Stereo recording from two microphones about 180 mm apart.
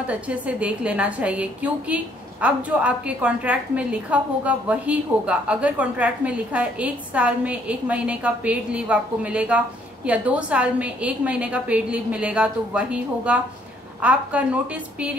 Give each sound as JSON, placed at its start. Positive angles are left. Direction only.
{"t": 0.0, "sound": "a woman's voice", "side_deg": -5}